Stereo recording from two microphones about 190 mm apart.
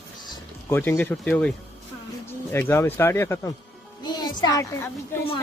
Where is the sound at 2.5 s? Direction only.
10° left (ahead or behind).